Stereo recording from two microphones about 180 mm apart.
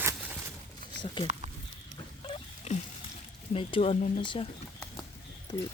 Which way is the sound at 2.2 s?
30° left (ahead or behind).